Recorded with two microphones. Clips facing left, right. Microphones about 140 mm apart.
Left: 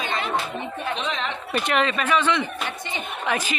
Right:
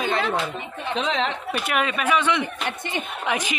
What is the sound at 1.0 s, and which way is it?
Speech, 90° right.